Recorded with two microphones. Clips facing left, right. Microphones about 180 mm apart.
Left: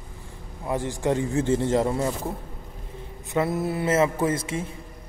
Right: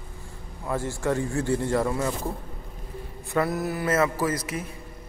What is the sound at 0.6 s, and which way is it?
A man's voice, 15° left (ahead or behind).